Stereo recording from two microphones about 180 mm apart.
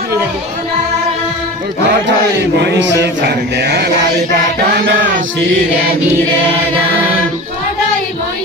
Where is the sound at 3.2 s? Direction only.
65° right (ahead or behind).